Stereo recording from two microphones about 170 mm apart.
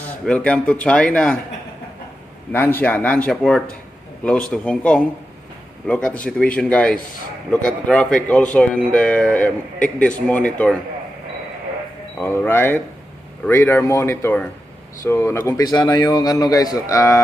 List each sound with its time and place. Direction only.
0.2 s speech: 5° left (ahead or behind)
2.5 s a man's voice: 10° left (ahead or behind)
12.2 s a man's voice: 15° left (ahead or behind)